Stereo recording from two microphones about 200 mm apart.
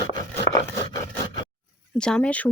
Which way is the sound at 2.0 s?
5° left (ahead or behind).